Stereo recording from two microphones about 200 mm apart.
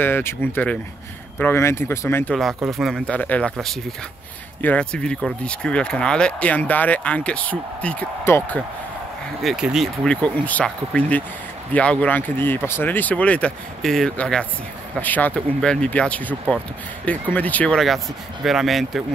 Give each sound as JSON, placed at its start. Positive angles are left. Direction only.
{"t": 0.0, "sound": "speech", "side_deg": 10}
{"t": 2.3, "sound": "speech", "side_deg": 0}
{"t": 9.4, "sound": "speech", "side_deg": 0}